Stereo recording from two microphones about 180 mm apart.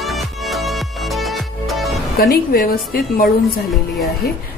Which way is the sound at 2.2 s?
55° left (ahead or behind).